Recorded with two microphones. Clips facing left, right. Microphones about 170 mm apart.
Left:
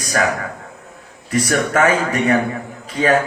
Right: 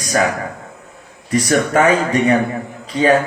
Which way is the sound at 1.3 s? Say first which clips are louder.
Right 2 dB; 30° right (ahead or behind).